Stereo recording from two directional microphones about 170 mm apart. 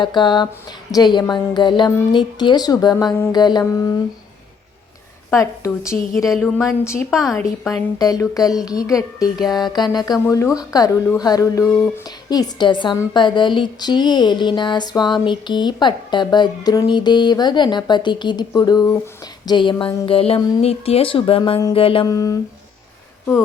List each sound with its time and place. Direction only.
0.0 s speech: 25° left (ahead or behind)
5.3 s speech: 15° left (ahead or behind)
6.2 s a woman's voice: centre (ahead or behind)
6.6 s speech: 15° left (ahead or behind)
7.1 s a woman's voice: centre (ahead or behind)
7.7 s a woman's voice: 20° left (ahead or behind)